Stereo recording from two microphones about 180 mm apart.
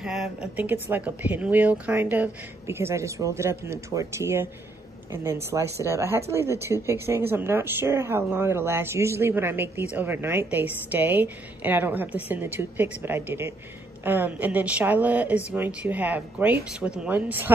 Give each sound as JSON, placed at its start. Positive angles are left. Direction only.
{"t": 0.0, "sound": "speech", "side_deg": -5}